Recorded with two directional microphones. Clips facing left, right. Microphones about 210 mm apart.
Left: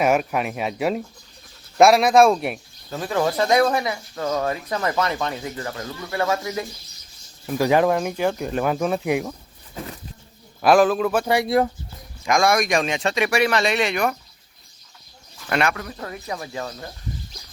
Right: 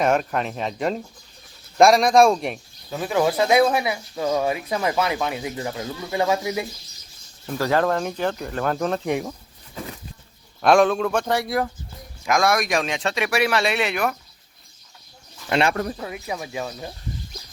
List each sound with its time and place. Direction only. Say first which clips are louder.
0.0 s speech: left 1 dB; 10° left (ahead or behind); by 6.7 s 15° right (ahead or behind)
7.6 s speech: left 3 dB; 15° left (ahead or behind)
10.6 s speech: left 1 dB; 5° left (ahead or behind)
11.4 s speech: left 5 dB; 25° left (ahead or behind)
12.2 s speech: left 1 dB; centre (ahead or behind)
15.4 s speech: right 1 dB; 25° right (ahead or behind)
15.7 s speech: right 8 dB; 40° right (ahead or behind)
16.0 s speech: right 1 dB; 10° right (ahead or behind)